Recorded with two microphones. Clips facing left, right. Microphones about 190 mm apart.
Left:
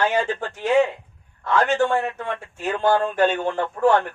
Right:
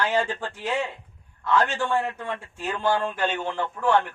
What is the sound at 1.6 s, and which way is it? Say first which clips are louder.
A man's voice: left 5 dB; 45° left (ahead or behind).